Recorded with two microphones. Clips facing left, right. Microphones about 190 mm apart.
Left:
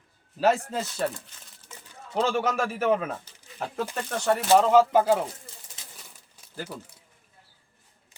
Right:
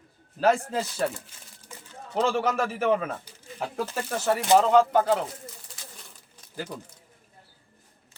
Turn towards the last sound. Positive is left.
turn(degrees=10)  # may be behind; listen again after turning